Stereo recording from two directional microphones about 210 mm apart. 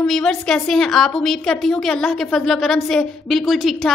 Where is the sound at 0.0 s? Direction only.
Centre (ahead or behind).